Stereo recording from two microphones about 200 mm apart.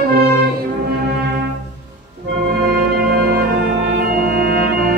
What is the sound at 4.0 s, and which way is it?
Organ, 45° right (ahead or behind).